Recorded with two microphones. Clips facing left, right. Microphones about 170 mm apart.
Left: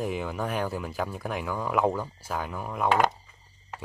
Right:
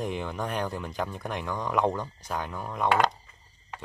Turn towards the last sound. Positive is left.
turn(degrees=5)  # may be behind; listen again after turning